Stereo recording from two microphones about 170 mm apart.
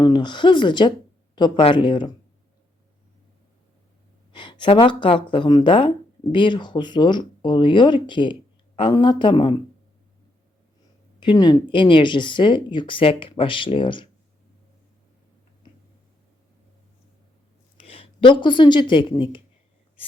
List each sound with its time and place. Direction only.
0.0 s speech: 25° left (ahead or behind)
4.3 s speech: 30° left (ahead or behind)
11.2 s speech: 25° left (ahead or behind)
17.7 s a woman's voice: 35° left (ahead or behind)